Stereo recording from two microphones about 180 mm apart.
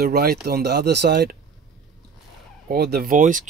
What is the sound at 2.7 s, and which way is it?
Speech, 60° right (ahead or behind).